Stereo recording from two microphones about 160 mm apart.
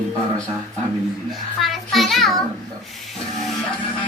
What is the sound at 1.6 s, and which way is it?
Child singing, centre (ahead or behind).